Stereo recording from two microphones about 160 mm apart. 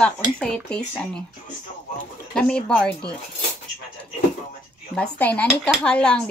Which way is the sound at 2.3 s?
5° left (ahead or behind).